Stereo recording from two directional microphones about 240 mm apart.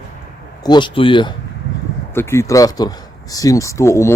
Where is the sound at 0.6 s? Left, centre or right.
Centre.